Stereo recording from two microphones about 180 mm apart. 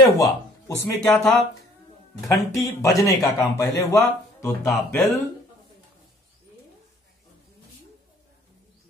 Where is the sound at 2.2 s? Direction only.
15° left (ahead or behind).